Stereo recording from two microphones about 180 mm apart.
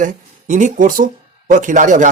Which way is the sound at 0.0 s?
45° right (ahead or behind).